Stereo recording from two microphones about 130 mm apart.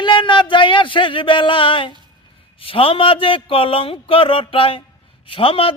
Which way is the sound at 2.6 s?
45° left (ahead or behind).